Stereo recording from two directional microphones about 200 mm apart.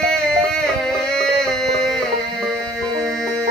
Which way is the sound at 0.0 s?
5° left (ahead or behind).